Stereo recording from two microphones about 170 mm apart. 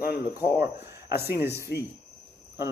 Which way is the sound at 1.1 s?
65° left (ahead or behind).